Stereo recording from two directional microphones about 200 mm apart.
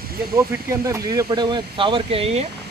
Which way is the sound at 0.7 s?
15° right (ahead or behind).